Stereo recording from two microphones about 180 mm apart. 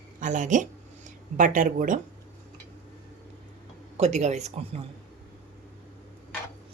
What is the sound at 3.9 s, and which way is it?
Speech, 40° right (ahead or behind).